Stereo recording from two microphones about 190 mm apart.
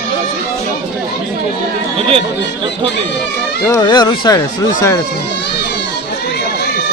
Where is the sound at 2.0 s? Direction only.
30° right (ahead or behind).